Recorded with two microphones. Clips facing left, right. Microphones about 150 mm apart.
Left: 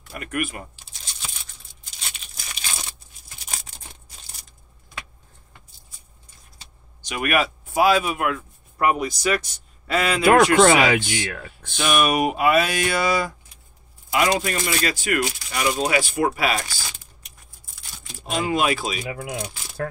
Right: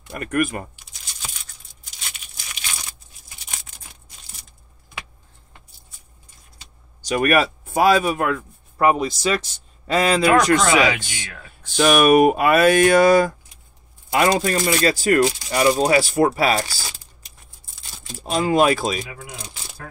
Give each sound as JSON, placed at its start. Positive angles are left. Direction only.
{"t": 0.2, "sound": "speech", "side_deg": -45}
{"t": 7.0, "sound": "speech", "side_deg": -40}
{"t": 10.6, "sound": "speech", "side_deg": 45}
{"t": 11.1, "sound": "speech", "side_deg": 55}
{"t": 11.7, "sound": "speech", "side_deg": -55}
{"t": 18.2, "sound": "speech", "side_deg": -40}
{"t": 19.0, "sound": "speech", "side_deg": 70}